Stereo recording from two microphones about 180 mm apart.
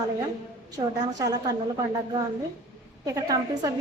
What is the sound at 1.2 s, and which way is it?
Speech, 20° right (ahead or behind).